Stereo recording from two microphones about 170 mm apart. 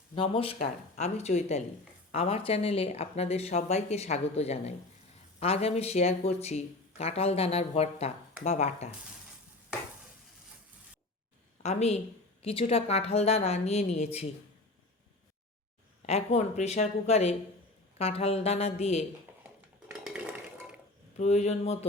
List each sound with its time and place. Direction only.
0.2 s speech: 35° left (ahead or behind)
11.6 s speech: 40° left (ahead or behind)
16.0 s speech: 40° left (ahead or behind)
20.1 s dishes: 5° right (ahead or behind)
21.2 s speech: 40° left (ahead or behind)